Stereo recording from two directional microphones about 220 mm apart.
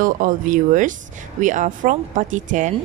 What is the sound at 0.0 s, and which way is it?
Speech, 35° right (ahead or behind).